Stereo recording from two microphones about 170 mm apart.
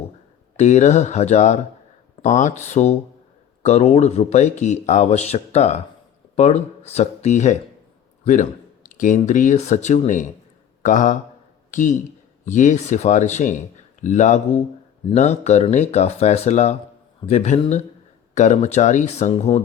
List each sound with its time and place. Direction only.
0.5 s speech: 45° left (ahead or behind)